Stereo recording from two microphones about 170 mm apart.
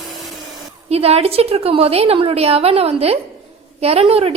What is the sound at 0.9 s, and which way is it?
A woman's voice, 35° right (ahead or behind).